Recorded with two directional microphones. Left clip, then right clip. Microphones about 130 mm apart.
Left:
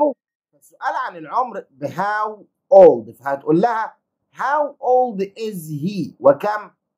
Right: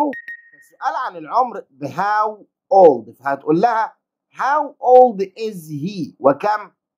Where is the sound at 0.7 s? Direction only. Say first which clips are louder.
Right 1 dB; 55° right (ahead or behind).